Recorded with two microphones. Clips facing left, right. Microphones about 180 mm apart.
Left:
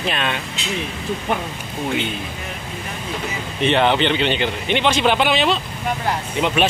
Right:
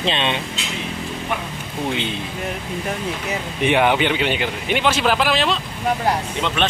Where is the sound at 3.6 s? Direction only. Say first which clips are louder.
Even; 10° right (ahead or behind).